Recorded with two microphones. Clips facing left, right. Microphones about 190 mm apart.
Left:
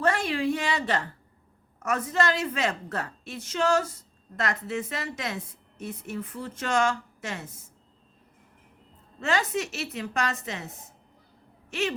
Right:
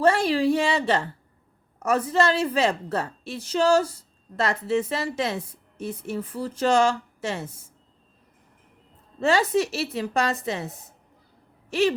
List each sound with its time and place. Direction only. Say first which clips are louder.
0.0 s a woman's voice: right 6 dB; 30° right (ahead or behind)
9.2 s a woman's voice: right 6 dB; 35° right (ahead or behind)
11.7 s a woman's voice: right 7 dB; 35° right (ahead or behind)